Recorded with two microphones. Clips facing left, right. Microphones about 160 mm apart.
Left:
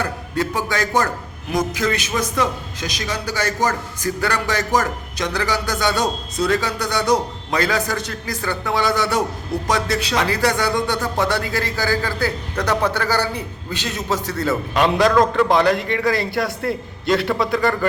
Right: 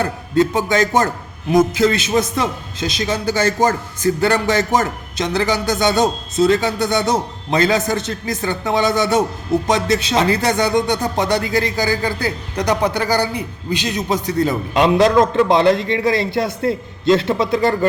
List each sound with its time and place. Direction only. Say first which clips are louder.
0.0 s speech: right 6 dB; 25° right (ahead or behind)